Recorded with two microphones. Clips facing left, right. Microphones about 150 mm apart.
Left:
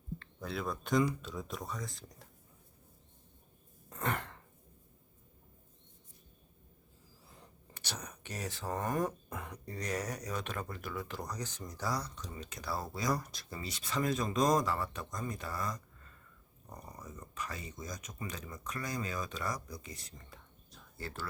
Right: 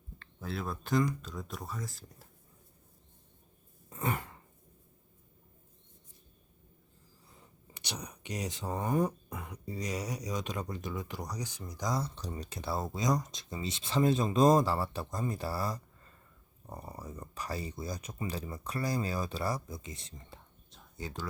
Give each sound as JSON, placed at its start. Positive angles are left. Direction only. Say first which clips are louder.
{"t": 0.3, "sound": "speech", "louder": "right 1 dB", "side_deg": 0}
{"t": 3.8, "sound": "throat clearing", "louder": "right 2 dB", "side_deg": -10}
{"t": 7.7, "sound": "a sound", "louder": "right 2 dB", "side_deg": -15}
{"t": 9.0, "sound": "speech", "louder": "right 4 dB", "side_deg": 0}